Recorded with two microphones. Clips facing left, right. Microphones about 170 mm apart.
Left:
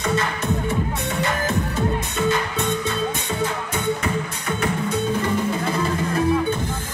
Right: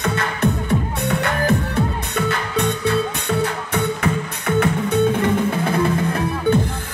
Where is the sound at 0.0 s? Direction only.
60° right (ahead or behind).